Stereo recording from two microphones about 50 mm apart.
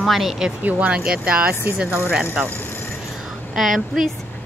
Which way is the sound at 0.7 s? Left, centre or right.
Right.